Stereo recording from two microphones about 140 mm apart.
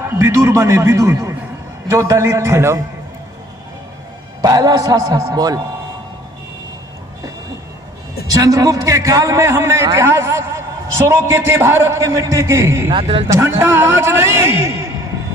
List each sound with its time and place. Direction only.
0.0 s a man's voice: 20° right (ahead or behind)
4.4 s a man's voice: 25° right (ahead or behind)
8.3 s a man's voice: 25° right (ahead or behind)
12.9 s speech: 40° right (ahead or behind)
13.3 s a man's voice: 20° right (ahead or behind)